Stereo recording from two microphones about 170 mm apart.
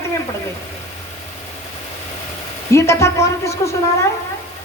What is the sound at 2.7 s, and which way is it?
A woman's voice, 15° left (ahead or behind).